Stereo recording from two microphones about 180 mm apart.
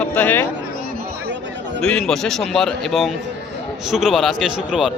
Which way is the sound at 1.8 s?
5° left (ahead or behind).